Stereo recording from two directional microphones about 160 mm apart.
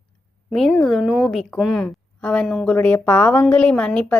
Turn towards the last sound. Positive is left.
turn(degrees=5)  # may be behind; listen again after turning